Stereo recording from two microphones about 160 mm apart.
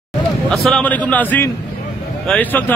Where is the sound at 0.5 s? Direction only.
5° left (ahead or behind).